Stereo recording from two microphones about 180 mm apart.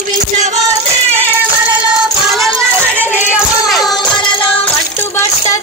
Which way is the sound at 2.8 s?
10° right (ahead or behind).